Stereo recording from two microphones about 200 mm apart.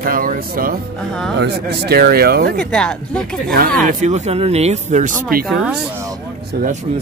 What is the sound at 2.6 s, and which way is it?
Speech, 5° left (ahead or behind).